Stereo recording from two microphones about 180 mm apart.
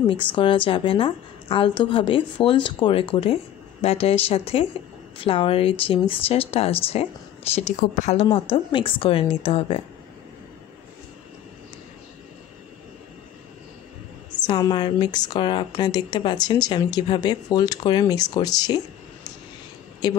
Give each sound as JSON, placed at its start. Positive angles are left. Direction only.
{"t": 0.4, "sound": "a woman's voice", "side_deg": 30}
{"t": 14.4, "sound": "a woman's voice", "side_deg": 25}
{"t": 20.0, "sound": "a woman's voice", "side_deg": 25}